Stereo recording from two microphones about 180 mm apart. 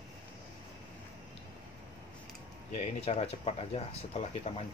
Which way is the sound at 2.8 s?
35° left (ahead or behind).